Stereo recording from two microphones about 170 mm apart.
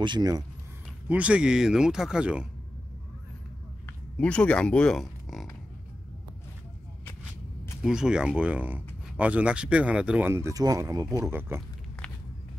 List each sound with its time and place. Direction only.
0.0 s speech: 25° right (ahead or behind)
1.0 s speech: 10° right (ahead or behind)
3.8 s speech: 5° left (ahead or behind)
7.8 s speech: 5° right (ahead or behind)